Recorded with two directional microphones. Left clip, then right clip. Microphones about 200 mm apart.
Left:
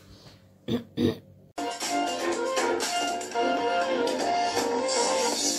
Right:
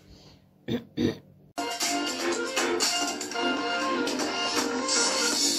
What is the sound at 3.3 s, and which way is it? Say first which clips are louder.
Music: left 3 dB; 25° right (ahead or behind).